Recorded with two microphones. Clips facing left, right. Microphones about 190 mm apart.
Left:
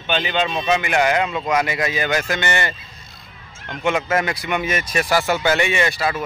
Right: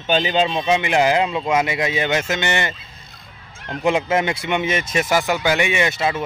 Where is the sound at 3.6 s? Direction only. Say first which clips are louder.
Right 2 dB; 30° right (ahead or behind).